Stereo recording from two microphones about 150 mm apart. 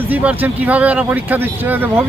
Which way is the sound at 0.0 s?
10° right (ahead or behind).